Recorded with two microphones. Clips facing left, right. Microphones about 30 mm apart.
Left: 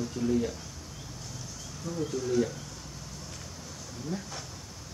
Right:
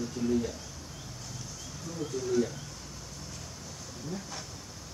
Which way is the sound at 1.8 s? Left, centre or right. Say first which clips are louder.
Left 3 dB; centre.